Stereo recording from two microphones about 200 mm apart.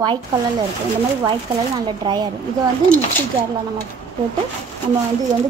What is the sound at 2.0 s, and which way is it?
Speech, 20° right (ahead or behind).